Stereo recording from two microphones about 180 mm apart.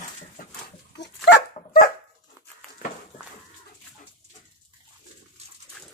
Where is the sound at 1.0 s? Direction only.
75° left (ahead or behind).